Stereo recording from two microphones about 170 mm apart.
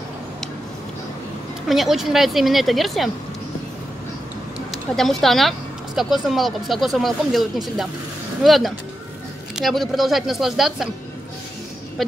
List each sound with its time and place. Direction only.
1.7 s speech: centre (ahead or behind)
4.6 s a woman's voice: centre (ahead or behind)